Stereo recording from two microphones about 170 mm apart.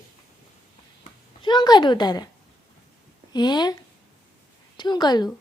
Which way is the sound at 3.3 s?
25° left (ahead or behind).